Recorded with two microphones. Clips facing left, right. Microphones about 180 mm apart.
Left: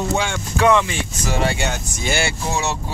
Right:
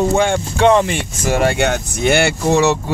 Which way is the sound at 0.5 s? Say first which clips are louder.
Right 3 dB; 30° right (ahead or behind).